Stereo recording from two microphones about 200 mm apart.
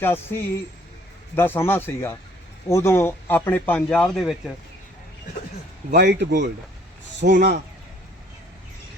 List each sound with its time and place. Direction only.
0.0 s speech: 10° left (ahead or behind)
5.9 s speech: 55° right (ahead or behind)